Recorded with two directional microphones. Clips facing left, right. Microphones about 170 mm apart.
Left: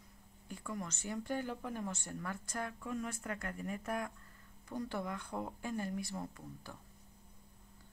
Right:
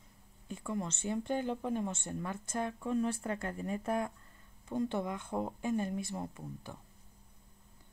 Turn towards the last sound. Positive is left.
turn(degrees=-20)  # may be behind; listen again after turning